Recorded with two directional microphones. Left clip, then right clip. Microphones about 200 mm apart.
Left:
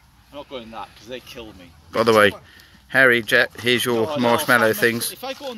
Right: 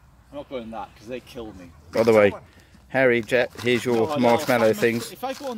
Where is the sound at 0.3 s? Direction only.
60° right (ahead or behind).